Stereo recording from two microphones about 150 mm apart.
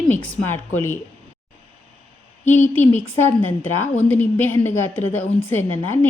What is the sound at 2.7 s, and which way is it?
Speech, 15° left (ahead or behind).